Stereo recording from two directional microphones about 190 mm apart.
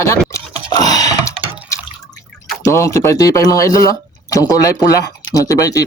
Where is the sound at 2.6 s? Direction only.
15° left (ahead or behind).